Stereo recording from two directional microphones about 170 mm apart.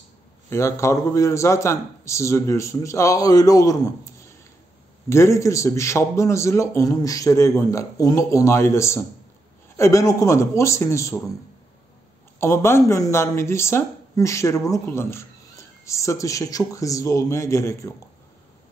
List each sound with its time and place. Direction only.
0.5 s speech: 15° left (ahead or behind)
5.1 s speech: 15° left (ahead or behind)
12.4 s speech: 15° left (ahead or behind)